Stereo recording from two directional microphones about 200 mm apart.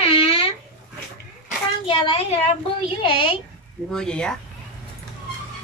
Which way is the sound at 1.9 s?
25° left (ahead or behind).